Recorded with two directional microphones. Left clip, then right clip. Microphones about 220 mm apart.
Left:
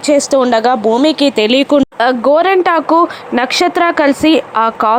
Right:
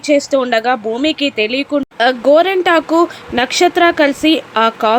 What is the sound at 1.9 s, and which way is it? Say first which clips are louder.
Speech: right 4 dB; 15° left (ahead or behind).